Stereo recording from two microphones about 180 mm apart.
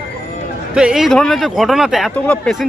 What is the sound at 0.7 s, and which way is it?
Speech, 5° right (ahead or behind).